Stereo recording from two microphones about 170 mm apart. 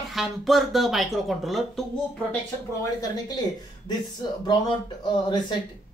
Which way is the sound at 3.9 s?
25° left (ahead or behind).